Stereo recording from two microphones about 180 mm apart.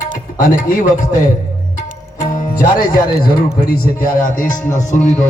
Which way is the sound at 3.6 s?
55° left (ahead or behind).